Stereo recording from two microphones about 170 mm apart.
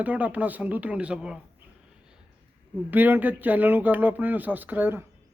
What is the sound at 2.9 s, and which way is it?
Speech, 10° right (ahead or behind).